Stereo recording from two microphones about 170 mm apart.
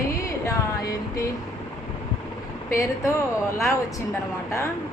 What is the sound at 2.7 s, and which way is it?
Speech, 15° left (ahead or behind).